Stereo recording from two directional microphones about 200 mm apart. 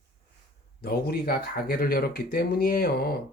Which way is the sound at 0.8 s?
50° left (ahead or behind).